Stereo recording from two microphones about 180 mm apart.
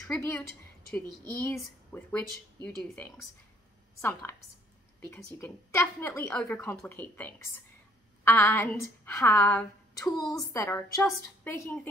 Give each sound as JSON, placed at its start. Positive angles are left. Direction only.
{"t": 0.1, "sound": "speech", "side_deg": 15}